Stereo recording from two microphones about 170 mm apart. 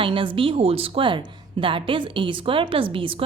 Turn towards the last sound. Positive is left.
turn(degrees=-30)  # may be behind; listen again after turning